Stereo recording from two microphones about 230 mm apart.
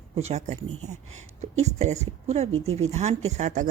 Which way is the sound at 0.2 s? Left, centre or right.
Right.